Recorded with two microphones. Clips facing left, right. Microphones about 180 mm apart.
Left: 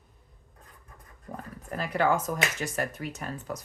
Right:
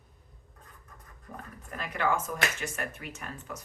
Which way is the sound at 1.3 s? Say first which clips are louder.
Left 5 dB; 40° left (ahead or behind).